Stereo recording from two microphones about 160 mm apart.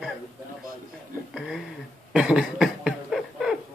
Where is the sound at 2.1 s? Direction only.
5° right (ahead or behind).